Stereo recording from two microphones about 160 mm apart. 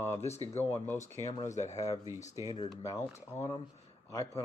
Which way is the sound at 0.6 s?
15° left (ahead or behind).